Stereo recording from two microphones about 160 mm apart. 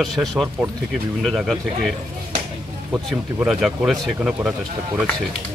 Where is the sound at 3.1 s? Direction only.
5° right (ahead or behind).